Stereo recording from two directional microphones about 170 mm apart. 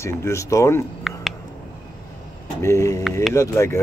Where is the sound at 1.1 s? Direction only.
Centre (ahead or behind).